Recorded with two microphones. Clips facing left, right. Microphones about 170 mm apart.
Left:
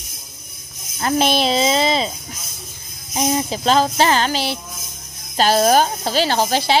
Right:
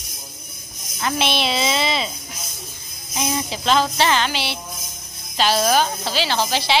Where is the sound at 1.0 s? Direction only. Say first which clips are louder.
Left 5 dB; 40° left (ahead or behind).